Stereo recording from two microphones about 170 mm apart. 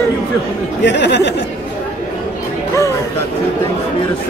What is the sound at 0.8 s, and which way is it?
Speech, 90° left.